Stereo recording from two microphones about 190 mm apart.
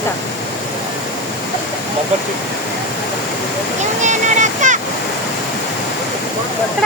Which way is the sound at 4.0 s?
40° right (ahead or behind).